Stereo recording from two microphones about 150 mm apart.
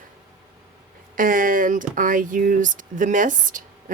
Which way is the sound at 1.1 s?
65° right (ahead or behind).